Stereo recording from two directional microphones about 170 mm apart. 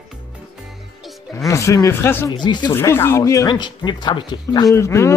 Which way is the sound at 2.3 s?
25° left (ahead or behind).